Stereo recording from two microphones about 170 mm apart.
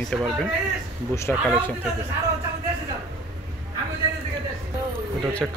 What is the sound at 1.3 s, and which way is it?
Speech, 5° left (ahead or behind).